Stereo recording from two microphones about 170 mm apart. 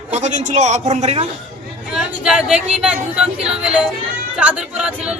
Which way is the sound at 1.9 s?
5° right (ahead or behind).